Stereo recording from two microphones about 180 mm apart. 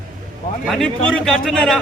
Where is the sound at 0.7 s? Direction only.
5° left (ahead or behind).